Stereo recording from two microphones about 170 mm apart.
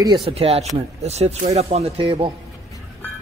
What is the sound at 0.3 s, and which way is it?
Speech, 35° right (ahead or behind).